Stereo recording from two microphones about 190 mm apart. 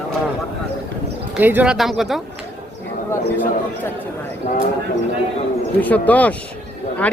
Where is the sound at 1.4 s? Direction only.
10° right (ahead or behind).